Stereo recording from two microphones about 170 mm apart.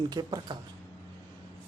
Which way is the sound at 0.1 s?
25° right (ahead or behind).